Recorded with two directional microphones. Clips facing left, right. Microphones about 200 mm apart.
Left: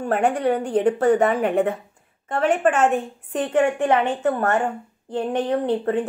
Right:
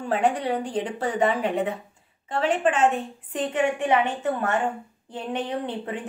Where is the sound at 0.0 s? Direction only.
50° left (ahead or behind).